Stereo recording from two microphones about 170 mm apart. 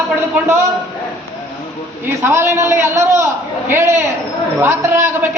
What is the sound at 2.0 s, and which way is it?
A man's voice, 15° right (ahead or behind).